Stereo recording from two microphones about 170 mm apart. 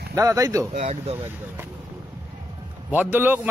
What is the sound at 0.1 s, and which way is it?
Speech, 20° right (ahead or behind).